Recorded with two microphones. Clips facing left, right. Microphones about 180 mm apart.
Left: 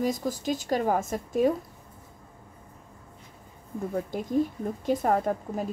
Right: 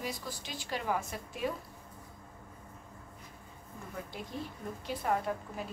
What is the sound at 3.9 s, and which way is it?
A woman's voice, 45° left (ahead or behind).